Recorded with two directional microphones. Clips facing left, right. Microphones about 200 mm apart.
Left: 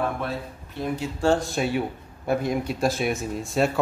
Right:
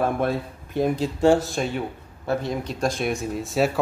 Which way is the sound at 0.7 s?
35° right (ahead or behind).